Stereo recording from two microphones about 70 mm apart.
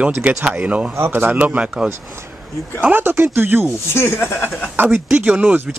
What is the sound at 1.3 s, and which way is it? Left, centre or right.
Speech, centre.